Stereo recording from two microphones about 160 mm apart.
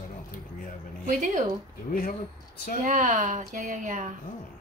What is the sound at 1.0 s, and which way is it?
Speech, 50° right (ahead or behind).